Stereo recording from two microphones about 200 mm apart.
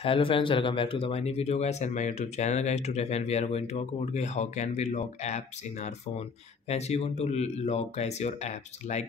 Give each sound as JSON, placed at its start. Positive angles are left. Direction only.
{"t": 0.0, "sound": "speech", "side_deg": 25}